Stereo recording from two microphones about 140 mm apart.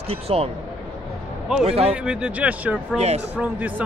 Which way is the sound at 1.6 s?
45° right (ahead or behind).